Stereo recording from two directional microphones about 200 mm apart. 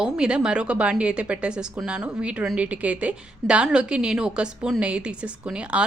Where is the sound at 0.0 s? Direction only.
5° right (ahead or behind).